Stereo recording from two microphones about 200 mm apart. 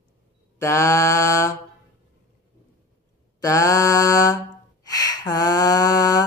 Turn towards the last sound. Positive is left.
turn(degrees=20)  # may be behind; listen again after turning